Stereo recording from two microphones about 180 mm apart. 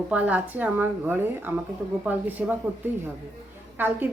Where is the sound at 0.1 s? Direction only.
10° right (ahead or behind).